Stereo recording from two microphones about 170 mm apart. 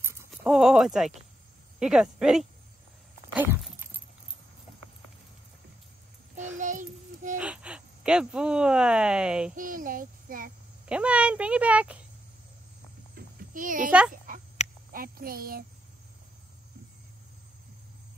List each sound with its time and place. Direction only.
0.0 s a sound: 15° right (ahead or behind)
0.3 s speech: centre (ahead or behind)
3.3 s a sound: 10° right (ahead or behind)
6.6 s child singing: 50° right (ahead or behind)
7.3 s speech: 5° right (ahead or behind)
9.6 s a child's voice: 55° right (ahead or behind)
10.9 s speech: 5° right (ahead or behind)
13.1 s a sound: 50° right (ahead or behind)
14.3 s dog: 55° right (ahead or behind)
14.9 s speech: 60° right (ahead or behind)